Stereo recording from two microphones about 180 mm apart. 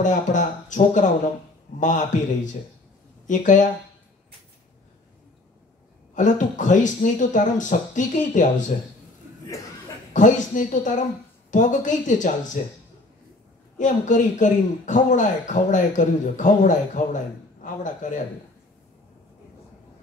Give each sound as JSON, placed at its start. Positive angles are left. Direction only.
{"t": 0.0, "sound": "a man's voice", "side_deg": 45}
{"t": 6.1, "sound": "a man's voice", "side_deg": 45}
{"t": 10.1, "sound": "a man's voice", "side_deg": 45}
{"t": 13.7, "sound": "a man's voice", "side_deg": 45}